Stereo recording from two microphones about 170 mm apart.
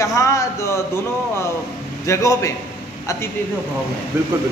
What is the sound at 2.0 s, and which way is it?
Speech, 15° left (ahead or behind).